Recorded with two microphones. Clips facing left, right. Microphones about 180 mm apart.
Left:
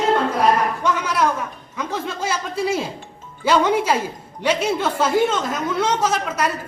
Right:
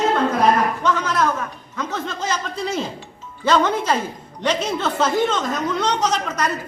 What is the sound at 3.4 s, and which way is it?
A woman's voice, 10° left (ahead or behind).